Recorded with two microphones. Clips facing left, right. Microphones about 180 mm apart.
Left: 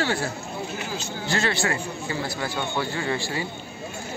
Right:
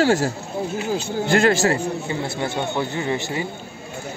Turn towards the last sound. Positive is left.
turn(degrees=-20)  # may be behind; listen again after turning